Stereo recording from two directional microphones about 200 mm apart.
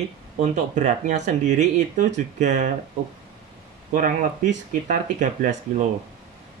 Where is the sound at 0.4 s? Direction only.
35° right (ahead or behind).